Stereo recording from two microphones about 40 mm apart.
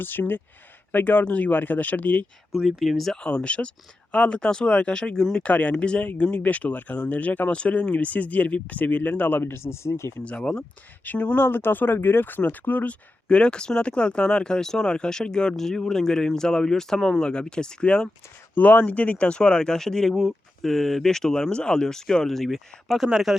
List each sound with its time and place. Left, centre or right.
0.0 s speech: left
1.2 s speech: left
2.5 s speech: centre
3.2 s speech: left
9.4 s speech: left
11.0 s speech: left
11.3 s speech: left
12.4 s speech: left
13.2 s speech: left
18.5 s speech: left; by 23.3 s centre